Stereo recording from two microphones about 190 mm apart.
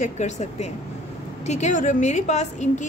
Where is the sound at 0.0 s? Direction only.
35° left (ahead or behind).